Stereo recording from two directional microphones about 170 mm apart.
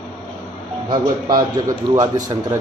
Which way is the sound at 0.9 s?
25° right (ahead or behind).